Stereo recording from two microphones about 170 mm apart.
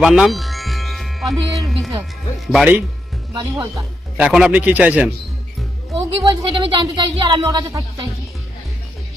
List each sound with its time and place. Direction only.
0.0 s a man's voice: 5° right (ahead or behind)
5.9 s speech: 25° right (ahead or behind)